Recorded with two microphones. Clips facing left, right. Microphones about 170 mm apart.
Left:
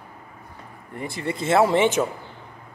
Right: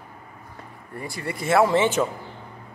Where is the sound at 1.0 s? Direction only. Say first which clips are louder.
Left 3 dB; 20° left (ahead or behind).